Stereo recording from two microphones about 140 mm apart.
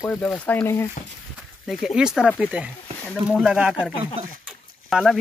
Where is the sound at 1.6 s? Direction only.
Centre (ahead or behind).